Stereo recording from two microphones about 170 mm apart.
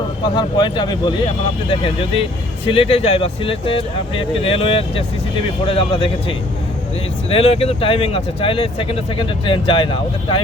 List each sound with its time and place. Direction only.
0.3 s speech: 25° left (ahead or behind)